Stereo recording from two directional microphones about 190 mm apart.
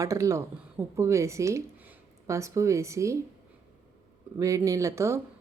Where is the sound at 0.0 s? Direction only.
15° right (ahead or behind).